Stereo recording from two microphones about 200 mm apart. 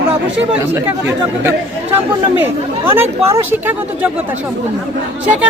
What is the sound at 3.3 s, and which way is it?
Speech, 10° right (ahead or behind).